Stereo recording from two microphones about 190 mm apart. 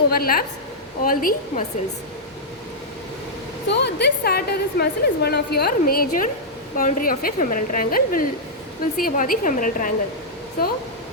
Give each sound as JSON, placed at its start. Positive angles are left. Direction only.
{"t": 0.1, "sound": "a woman's voice", "side_deg": 50}
{"t": 3.7, "sound": "a woman's voice", "side_deg": 65}